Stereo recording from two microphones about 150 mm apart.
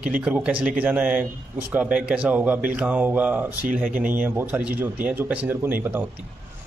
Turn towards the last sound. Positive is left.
turn(degrees=-15)  # may be behind; listen again after turning